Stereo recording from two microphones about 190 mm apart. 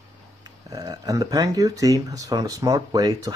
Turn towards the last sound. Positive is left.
turn(degrees=-20)  # may be behind; listen again after turning